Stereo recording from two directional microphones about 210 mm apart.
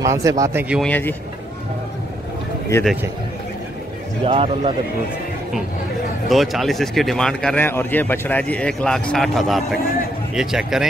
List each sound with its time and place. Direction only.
0.0 s speech: 15° right (ahead or behind)
0.8 s speech: 10° left (ahead or behind)
2.8 s speech: centre (ahead or behind)
4.2 s speech: 25° right (ahead or behind)
6.2 s speech: centre (ahead or behind)